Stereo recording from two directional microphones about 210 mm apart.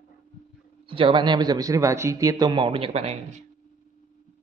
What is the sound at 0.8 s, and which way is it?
A man's voice, 25° right (ahead or behind).